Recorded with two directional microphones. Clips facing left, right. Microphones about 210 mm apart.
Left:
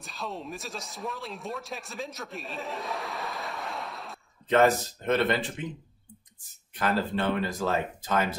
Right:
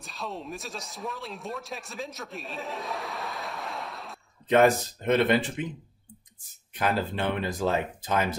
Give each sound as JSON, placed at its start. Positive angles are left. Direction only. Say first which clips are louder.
{"t": 0.0, "sound": "speech", "louder": "even", "side_deg": 0}
{"t": 4.5, "sound": "speech", "louder": "right 2 dB", "side_deg": -15}
{"t": 6.8, "sound": "speech", "louder": "even", "side_deg": -15}